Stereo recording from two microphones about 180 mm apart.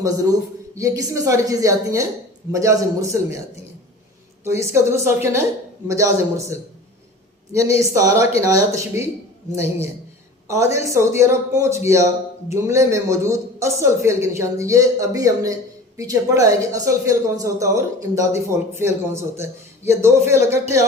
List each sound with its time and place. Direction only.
0.0 s a woman's voice: 20° right (ahead or behind)
4.6 s speech: 15° right (ahead or behind)
7.8 s speech: 15° right (ahead or behind)